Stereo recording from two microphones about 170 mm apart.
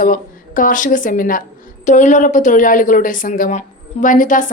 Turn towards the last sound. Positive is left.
turn(degrees=50)  # may be behind; listen again after turning